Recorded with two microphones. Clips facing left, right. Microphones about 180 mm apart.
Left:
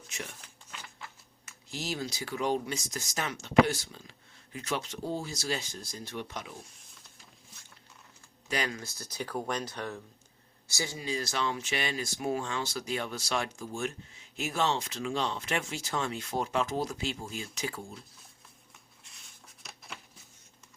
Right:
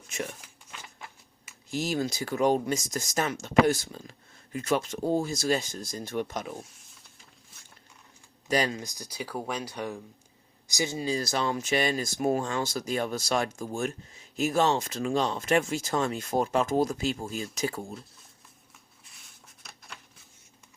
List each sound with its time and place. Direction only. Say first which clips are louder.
0.4 s a sound: right 1 dB; 10° right (ahead or behind)
1.7 s speech: right 7 dB; 50° right (ahead or behind)
8.4 s speech: right 6 dB; 35° right (ahead or behind)
8.8 s speech: right 1 dB; 15° right (ahead or behind)
11.0 s speech: right 3 dB; 35° right (ahead or behind)
19.0 s a sound: even; centre (ahead or behind)